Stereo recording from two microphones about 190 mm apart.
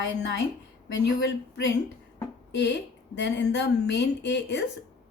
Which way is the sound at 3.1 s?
65° left (ahead or behind).